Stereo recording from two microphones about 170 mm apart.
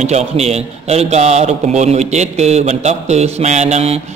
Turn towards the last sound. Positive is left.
turn(degrees=-40)  # may be behind; listen again after turning